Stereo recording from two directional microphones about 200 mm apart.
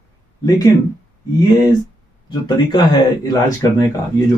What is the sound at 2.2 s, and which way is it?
A man's voice, 20° left (ahead or behind).